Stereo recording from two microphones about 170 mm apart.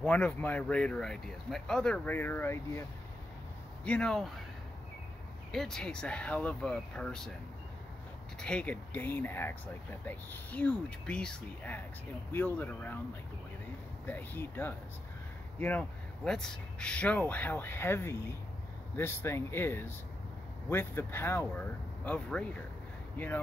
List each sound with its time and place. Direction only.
0.0 s speech: 10° left (ahead or behind)
3.8 s speech: 5° left (ahead or behind)
5.5 s speech: 5° left (ahead or behind)
8.4 s speech: 5° left (ahead or behind)
14.0 s speech: 10° left (ahead or behind)